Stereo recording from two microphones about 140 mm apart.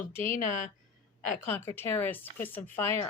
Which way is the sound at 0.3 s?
65° left (ahead or behind).